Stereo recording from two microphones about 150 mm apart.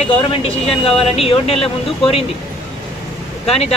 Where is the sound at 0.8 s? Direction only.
40° left (ahead or behind).